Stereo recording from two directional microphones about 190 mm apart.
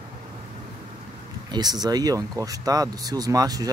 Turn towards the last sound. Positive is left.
turn(degrees=-20)  # may be behind; listen again after turning